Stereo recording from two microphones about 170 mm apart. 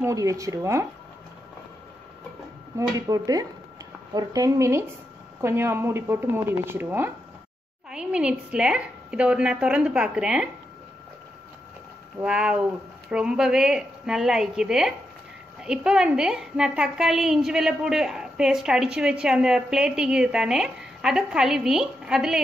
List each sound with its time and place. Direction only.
0.0 s speech: 20° right (ahead or behind)
3.1 s a woman's voice: 20° right (ahead or behind); by 10.5 s 5° right (ahead or behind)
12.2 s a woman's voice: 5° right (ahead or behind)